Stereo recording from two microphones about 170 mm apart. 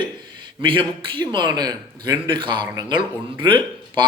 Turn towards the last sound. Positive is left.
turn(degrees=-30)  # may be behind; listen again after turning